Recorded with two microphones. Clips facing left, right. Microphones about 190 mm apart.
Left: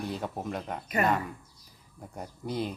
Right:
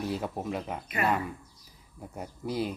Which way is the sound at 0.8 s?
40° left (ahead or behind).